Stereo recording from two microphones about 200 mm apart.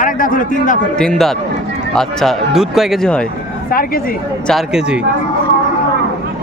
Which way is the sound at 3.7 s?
45° left (ahead or behind).